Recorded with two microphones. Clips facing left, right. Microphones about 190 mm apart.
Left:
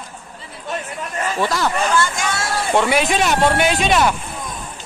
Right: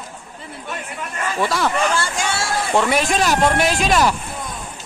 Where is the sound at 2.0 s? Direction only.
30° right (ahead or behind).